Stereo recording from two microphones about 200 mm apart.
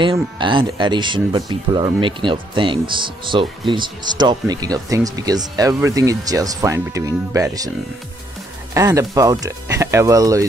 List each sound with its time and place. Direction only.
0.0 s speech: 25° right (ahead or behind)
8.7 s speech: 15° right (ahead or behind)